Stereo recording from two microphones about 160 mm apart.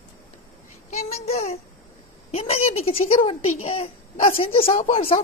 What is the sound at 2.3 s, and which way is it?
A child's voice, 35° left (ahead or behind).